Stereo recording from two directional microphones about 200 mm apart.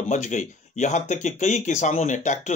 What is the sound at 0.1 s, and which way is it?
Speech, 35° left (ahead or behind).